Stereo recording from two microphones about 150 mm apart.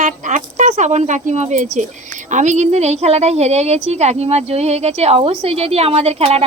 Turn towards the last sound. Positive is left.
turn(degrees=-45)  # may be behind; listen again after turning